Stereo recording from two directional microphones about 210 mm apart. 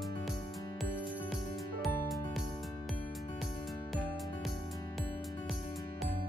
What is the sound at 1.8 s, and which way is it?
Music, centre (ahead or behind).